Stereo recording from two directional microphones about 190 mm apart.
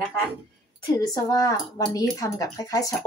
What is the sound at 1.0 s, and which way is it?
A woman's voice, 20° left (ahead or behind).